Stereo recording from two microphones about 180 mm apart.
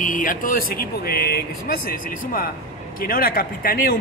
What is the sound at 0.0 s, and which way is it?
A man's voice, 50° left (ahead or behind).